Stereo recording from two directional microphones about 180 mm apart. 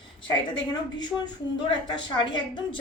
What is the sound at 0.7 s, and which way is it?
A woman's voice, 25° left (ahead or behind).